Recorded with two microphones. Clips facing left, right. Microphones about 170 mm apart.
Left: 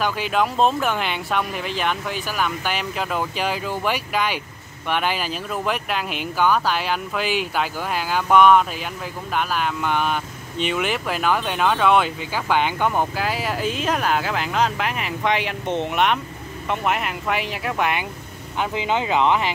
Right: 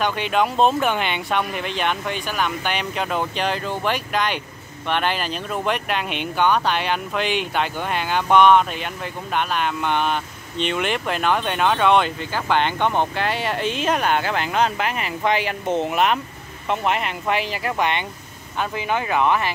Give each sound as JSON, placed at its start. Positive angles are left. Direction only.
{"t": 0.0, "sound": "speech", "side_deg": 5}
{"t": 18.6, "sound": "speech", "side_deg": 20}